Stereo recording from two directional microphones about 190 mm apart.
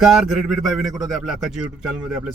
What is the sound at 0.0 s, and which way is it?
A man's voice, 5° right (ahead or behind).